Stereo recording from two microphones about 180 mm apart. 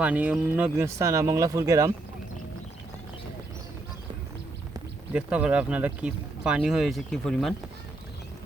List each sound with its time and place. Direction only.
0.0 s speech: 10° right (ahead or behind)
5.1 s speech: 5° right (ahead or behind)